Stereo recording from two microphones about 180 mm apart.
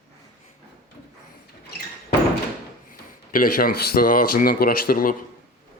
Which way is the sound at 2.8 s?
50° left (ahead or behind).